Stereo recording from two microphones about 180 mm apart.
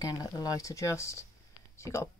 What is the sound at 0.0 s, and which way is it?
Speech, 20° left (ahead or behind).